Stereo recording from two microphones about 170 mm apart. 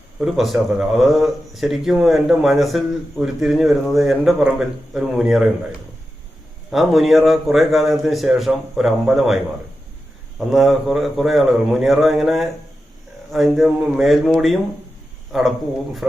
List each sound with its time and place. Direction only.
0.2 s speech: centre (ahead or behind)
6.7 s speech: centre (ahead or behind)
10.5 s speech: centre (ahead or behind)